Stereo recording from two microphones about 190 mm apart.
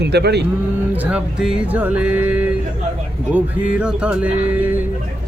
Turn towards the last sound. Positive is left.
turn(degrees=-10)  # may be behind; listen again after turning